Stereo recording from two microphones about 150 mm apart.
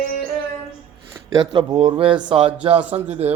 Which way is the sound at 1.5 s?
40° right (ahead or behind).